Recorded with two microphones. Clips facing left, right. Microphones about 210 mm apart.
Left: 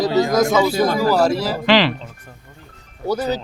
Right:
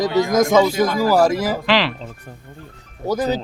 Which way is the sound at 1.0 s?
10° right (ahead or behind).